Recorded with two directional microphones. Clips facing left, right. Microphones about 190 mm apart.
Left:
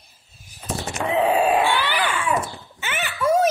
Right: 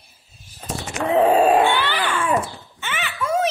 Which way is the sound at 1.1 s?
40° right (ahead or behind).